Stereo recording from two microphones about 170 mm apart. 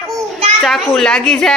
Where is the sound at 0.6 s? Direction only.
Centre (ahead or behind).